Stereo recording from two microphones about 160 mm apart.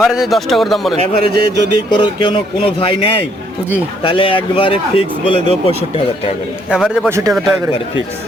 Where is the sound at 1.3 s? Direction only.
90° right.